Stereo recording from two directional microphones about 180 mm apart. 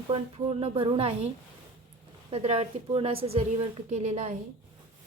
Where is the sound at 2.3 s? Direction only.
35° right (ahead or behind).